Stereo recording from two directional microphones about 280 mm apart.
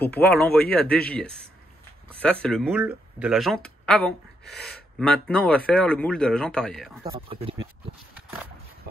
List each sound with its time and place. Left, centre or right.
0.0 s speech: centre
2.4 s speech: centre
7.0 s speech: centre